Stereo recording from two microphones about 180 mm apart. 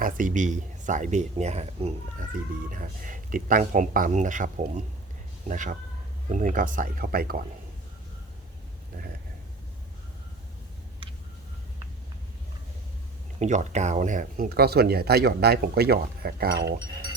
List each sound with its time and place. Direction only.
0.0 s speech: 45° right (ahead or behind)
13.4 s speech: 40° right (ahead or behind); by 16.7 s 65° right (ahead or behind)